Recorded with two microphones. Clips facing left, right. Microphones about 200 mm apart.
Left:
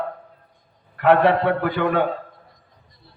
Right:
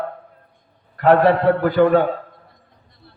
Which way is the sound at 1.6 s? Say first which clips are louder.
Right 6 dB; 40° right (ahead or behind).